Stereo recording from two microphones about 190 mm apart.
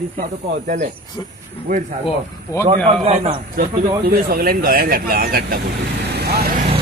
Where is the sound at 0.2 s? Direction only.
45° right (ahead or behind).